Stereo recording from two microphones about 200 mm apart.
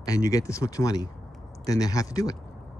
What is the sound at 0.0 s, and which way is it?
Speech, 15° left (ahead or behind).